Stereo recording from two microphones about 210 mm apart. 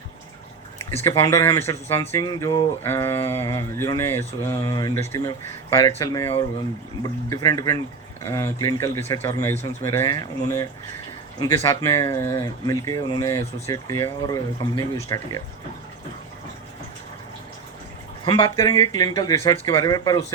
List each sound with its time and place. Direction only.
1.0 s speech: 15° left (ahead or behind)
11.3 s speech: 20° left (ahead or behind)
18.3 s speech: 20° left (ahead or behind)